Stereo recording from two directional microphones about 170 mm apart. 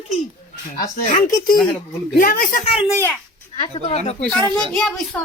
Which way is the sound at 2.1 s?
65° left (ahead or behind).